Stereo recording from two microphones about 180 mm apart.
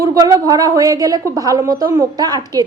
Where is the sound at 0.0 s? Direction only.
20° right (ahead or behind).